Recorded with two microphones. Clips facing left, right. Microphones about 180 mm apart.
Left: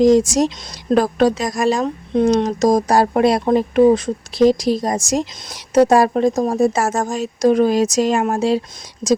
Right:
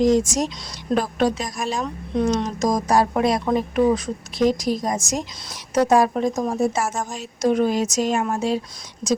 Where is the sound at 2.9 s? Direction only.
70° left (ahead or behind).